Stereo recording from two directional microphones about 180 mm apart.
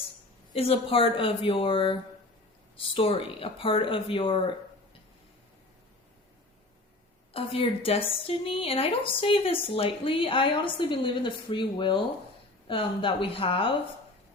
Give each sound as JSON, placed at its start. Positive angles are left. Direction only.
{"t": 0.5, "sound": "speech", "side_deg": 30}
{"t": 7.3, "sound": "speech", "side_deg": 30}